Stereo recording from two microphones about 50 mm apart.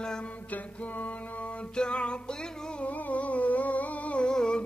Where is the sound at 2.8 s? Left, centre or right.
Left.